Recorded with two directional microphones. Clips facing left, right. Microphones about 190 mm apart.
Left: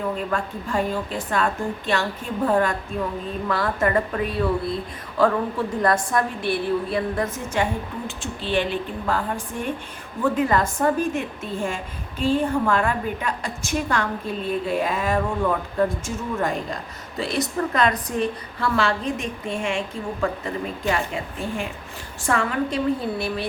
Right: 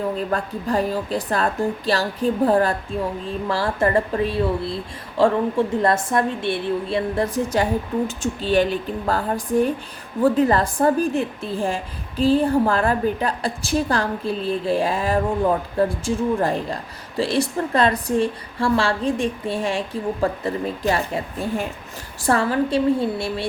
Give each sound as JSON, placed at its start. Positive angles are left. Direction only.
{"t": 0.3, "sound": "a woman's voice", "side_deg": -35}